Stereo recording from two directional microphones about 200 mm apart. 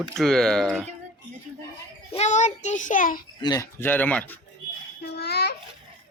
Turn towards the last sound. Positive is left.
turn(degrees=55)  # may be behind; listen again after turning